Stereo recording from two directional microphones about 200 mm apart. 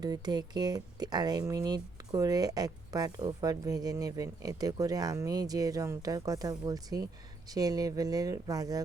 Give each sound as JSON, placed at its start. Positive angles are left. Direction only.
{"t": 0.0, "sound": "speech", "side_deg": -20}